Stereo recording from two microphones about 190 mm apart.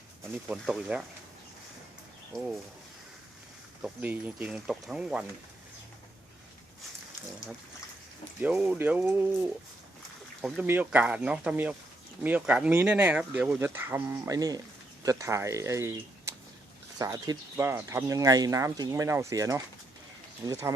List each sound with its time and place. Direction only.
0.4 s speech: 5° right (ahead or behind)
2.3 s speech: centre (ahead or behind)
3.8 s speech: 5° right (ahead or behind)
8.4 s speech: 5° right (ahead or behind)
17.0 s speech: 15° right (ahead or behind)